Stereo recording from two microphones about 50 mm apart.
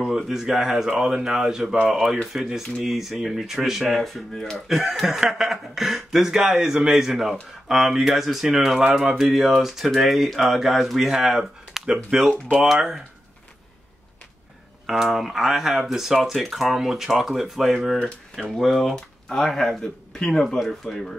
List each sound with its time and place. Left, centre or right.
0.0 s speech: centre
3.8 s speech: centre
14.9 s speech: centre
18.9 s speech: centre
20.2 s speech: centre
20.4 s speech: centre